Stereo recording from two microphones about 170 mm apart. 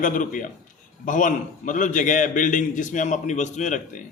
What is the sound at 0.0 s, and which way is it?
A man's voice, 50° left (ahead or behind).